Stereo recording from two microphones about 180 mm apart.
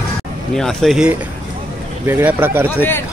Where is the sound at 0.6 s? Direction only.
Centre (ahead or behind).